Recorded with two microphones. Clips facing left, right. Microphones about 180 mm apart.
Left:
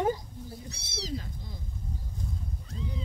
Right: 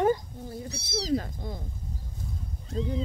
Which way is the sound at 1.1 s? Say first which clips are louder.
Right 12 dB; 55° right (ahead or behind).